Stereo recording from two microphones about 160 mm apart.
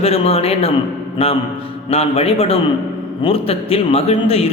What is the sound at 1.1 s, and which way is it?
Mantra, 35° left (ahead or behind).